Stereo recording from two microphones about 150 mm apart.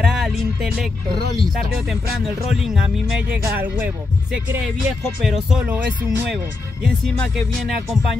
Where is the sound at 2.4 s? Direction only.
Centre (ahead or behind).